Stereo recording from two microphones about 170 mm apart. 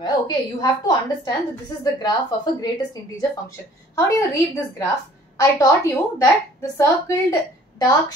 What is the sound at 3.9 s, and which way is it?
Speech, 15° left (ahead or behind).